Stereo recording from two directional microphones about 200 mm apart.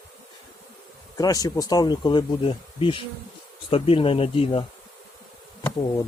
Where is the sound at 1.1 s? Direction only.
20° left (ahead or behind).